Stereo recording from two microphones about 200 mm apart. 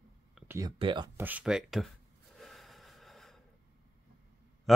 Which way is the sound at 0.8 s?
25° right (ahead or behind).